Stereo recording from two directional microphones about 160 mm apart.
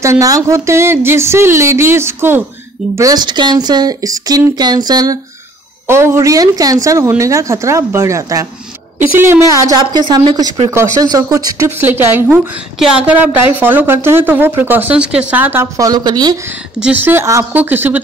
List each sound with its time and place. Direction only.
0.0 s a woman's voice: 20° right (ahead or behind)
3.0 s speech: 25° right (ahead or behind)
10.7 s a woman's voice: 15° right (ahead or behind)
16.8 s a woman's voice: 10° right (ahead or behind)